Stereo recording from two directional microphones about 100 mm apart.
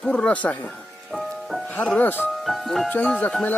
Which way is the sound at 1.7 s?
15° left (ahead or behind).